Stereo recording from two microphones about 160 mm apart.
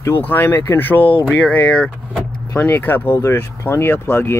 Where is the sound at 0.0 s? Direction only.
15° left (ahead or behind).